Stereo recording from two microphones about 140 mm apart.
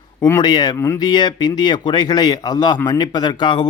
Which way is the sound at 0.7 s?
15° left (ahead or behind).